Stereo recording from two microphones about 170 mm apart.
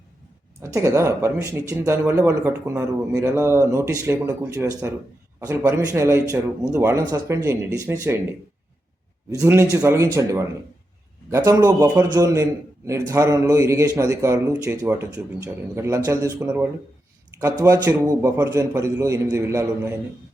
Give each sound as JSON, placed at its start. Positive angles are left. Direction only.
{"t": 0.6, "sound": "a man's voice", "side_deg": -15}
{"t": 9.3, "sound": "a man's voice", "side_deg": -15}